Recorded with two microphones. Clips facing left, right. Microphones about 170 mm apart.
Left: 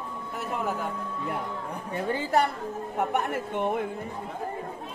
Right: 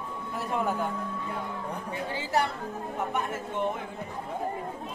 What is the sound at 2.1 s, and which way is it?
A woman's voice, 50° left (ahead or behind).